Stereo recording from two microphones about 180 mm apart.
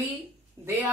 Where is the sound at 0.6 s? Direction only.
15° right (ahead or behind).